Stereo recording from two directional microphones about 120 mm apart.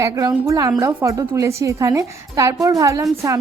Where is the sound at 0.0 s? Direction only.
30° right (ahead or behind).